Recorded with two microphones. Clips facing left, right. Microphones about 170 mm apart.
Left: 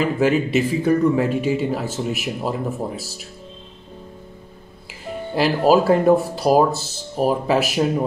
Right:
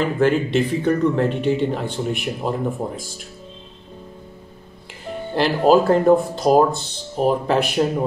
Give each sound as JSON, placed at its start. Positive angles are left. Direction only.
{"t": 0.0, "sound": "speech", "side_deg": 5}
{"t": 5.3, "sound": "speech", "side_deg": 5}